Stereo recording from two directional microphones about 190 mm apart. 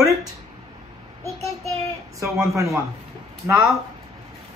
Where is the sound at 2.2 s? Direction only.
15° right (ahead or behind).